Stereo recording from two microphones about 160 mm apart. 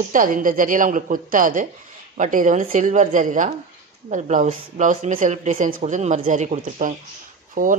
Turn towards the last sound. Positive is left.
turn(degrees=-60)  # may be behind; listen again after turning